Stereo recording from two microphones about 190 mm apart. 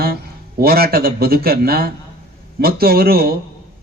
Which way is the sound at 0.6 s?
55° right (ahead or behind).